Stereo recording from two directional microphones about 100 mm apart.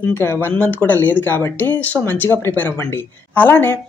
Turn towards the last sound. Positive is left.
turn(degrees=20)  # may be behind; listen again after turning